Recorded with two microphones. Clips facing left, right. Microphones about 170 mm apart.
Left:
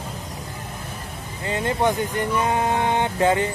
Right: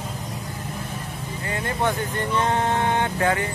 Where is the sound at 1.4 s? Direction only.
20° left (ahead or behind).